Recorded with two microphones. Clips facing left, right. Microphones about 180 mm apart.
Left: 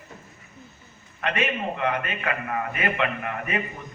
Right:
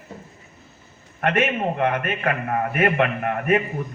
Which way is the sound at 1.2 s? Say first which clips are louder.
Right 5 dB; 55° right (ahead or behind).